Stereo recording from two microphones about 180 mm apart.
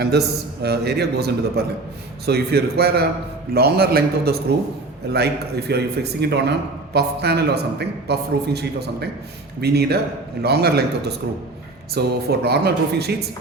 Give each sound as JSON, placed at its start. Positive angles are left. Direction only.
{"t": 0.0, "sound": "a man's voice", "side_deg": -65}